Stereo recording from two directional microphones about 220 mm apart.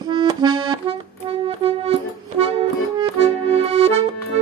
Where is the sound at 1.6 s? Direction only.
25° right (ahead or behind).